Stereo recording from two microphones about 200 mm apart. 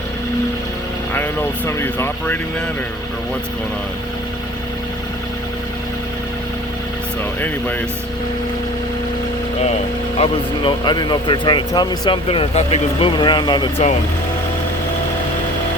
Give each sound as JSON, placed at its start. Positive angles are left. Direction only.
{"t": 1.1, "sound": "speech", "side_deg": 10}
{"t": 10.2, "sound": "speech", "side_deg": 25}